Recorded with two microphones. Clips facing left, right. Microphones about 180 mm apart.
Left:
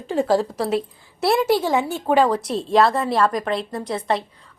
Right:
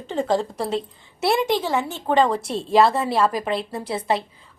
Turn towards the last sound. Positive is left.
turn(degrees=-5)  # may be behind; listen again after turning